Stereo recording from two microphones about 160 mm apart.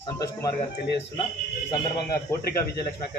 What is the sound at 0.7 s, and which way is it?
Speech, 90° left.